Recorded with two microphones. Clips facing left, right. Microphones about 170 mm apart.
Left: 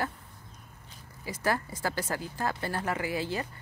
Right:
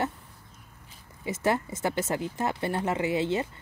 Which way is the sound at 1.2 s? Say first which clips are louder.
Right 4 dB; 25° right (ahead or behind).